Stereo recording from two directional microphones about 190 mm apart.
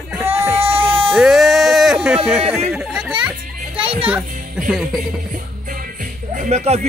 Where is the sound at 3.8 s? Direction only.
30° right (ahead or behind).